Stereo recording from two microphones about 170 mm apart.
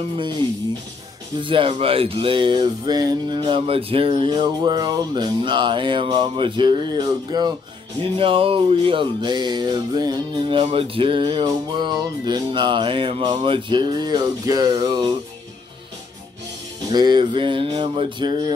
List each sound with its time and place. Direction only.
1.4 s music: 30° right (ahead or behind)
16.9 s music: 25° right (ahead or behind)